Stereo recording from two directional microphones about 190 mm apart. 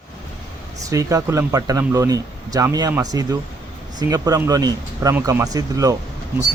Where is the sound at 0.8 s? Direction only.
15° right (ahead or behind).